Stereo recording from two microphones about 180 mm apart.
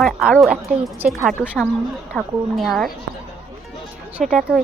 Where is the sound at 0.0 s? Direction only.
Centre (ahead or behind).